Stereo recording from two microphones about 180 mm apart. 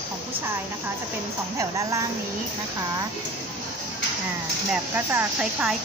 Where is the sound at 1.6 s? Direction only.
20° right (ahead or behind).